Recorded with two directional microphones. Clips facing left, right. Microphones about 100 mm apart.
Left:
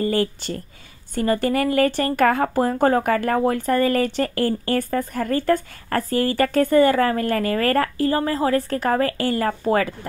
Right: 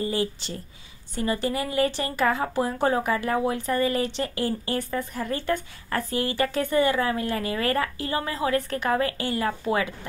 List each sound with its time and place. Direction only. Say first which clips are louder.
0.0 s speech: left 5 dB; 55° left (ahead or behind)